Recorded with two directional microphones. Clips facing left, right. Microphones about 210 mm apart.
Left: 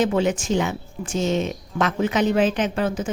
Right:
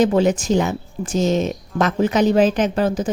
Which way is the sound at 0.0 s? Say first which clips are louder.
Right 4 dB; 40° right (ahead or behind).